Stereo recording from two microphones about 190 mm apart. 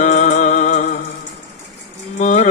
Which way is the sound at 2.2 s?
40° left (ahead or behind).